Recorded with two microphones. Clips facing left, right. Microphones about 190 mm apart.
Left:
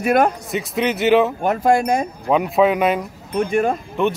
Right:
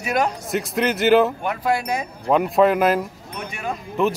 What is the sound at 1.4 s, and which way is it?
Speech, 45° left (ahead or behind).